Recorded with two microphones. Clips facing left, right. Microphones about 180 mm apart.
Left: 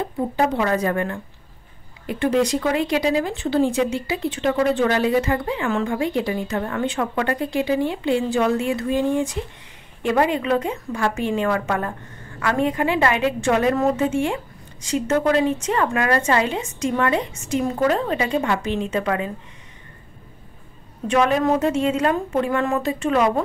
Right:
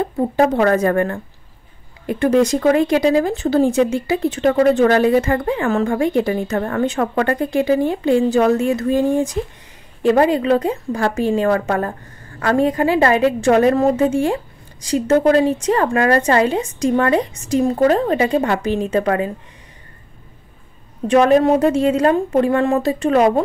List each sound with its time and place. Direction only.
0.0 s a woman's voice: 50° right (ahead or behind)
21.1 s a woman's voice: 35° right (ahead or behind)